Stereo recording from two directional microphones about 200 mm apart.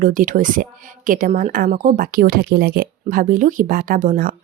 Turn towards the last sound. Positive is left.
turn(degrees=-45)  # may be behind; listen again after turning